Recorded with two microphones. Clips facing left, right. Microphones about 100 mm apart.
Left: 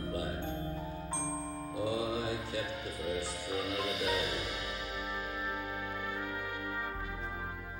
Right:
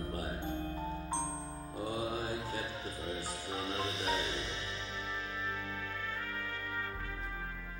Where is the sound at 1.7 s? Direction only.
40° right (ahead or behind).